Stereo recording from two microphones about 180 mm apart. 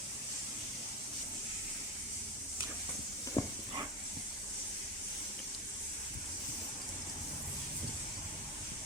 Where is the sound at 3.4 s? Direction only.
20° left (ahead or behind).